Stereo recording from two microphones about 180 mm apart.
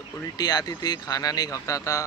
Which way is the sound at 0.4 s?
20° left (ahead or behind).